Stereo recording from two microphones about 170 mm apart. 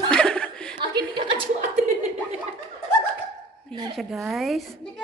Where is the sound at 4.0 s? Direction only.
Centre (ahead or behind).